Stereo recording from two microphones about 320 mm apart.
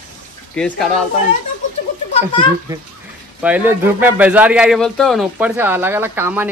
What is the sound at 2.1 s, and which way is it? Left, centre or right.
Speech, centre.